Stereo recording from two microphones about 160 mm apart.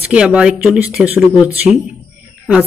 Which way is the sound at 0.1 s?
5° right (ahead or behind).